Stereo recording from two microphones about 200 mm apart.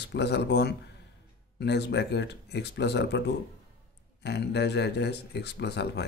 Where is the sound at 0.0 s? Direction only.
60° left (ahead or behind).